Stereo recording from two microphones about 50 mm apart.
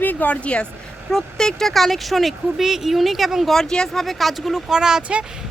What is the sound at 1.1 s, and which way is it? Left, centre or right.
Speech, centre.